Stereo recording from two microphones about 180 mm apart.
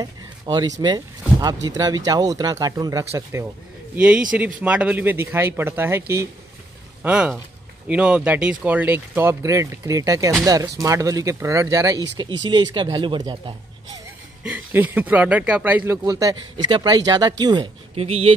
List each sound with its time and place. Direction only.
0.0 s a man's voice: 20° right (ahead or behind)
14.4 s speech: 10° right (ahead or behind); by 18.3 s 35° right (ahead or behind)